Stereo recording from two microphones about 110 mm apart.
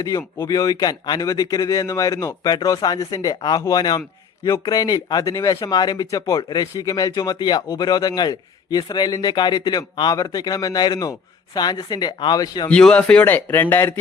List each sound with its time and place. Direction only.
0.4 s speech: 35° left (ahead or behind)
12.6 s speech: 10° left (ahead or behind)